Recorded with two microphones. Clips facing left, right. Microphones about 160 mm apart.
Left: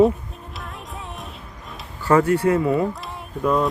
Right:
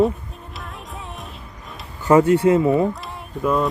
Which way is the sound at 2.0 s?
20° right (ahead or behind).